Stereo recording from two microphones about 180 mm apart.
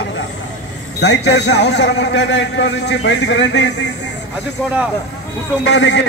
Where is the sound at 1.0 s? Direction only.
75° left (ahead or behind).